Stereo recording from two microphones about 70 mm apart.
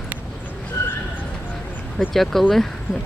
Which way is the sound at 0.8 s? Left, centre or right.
Left.